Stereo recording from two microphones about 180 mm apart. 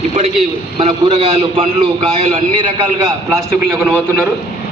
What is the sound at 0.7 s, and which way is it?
Speech, 30° right (ahead or behind).